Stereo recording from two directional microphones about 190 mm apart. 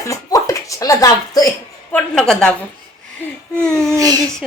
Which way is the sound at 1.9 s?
5° left (ahead or behind).